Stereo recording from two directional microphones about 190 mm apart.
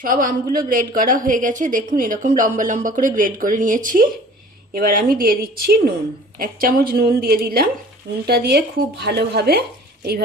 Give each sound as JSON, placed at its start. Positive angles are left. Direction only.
{"t": 0.0, "sound": "a woman's voice", "side_deg": -45}